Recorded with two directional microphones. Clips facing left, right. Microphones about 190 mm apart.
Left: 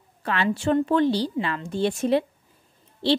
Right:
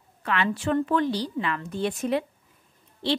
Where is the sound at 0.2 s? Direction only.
35° left (ahead or behind).